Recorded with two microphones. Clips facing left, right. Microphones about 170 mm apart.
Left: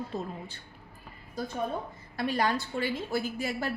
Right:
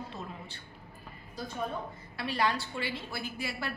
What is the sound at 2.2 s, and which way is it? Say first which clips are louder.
A woman's voice: left 3 dB; 45° left (ahead or behind).